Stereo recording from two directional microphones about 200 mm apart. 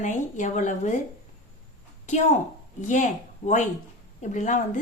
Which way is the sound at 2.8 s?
35° left (ahead or behind).